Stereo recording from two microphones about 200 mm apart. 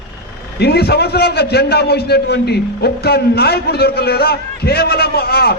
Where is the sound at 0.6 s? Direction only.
50° left (ahead or behind).